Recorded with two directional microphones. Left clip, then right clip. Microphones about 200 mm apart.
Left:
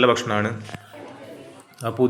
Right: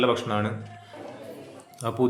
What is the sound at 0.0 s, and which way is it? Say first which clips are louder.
Speech: left 5 dB; 10° left (ahead or behind).